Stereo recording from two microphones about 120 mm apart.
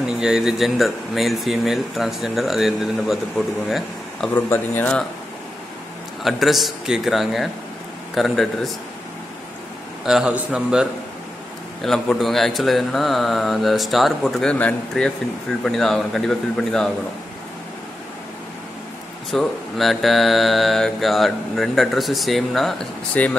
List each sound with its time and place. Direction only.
0.0 s speech: 5° right (ahead or behind)
4.3 s speech: 15° left (ahead or behind)
6.2 s speech: centre (ahead or behind)
10.0 s a man's voice: 5° right (ahead or behind)
11.8 s speech: 5° left (ahead or behind)
19.3 s speech: centre (ahead or behind)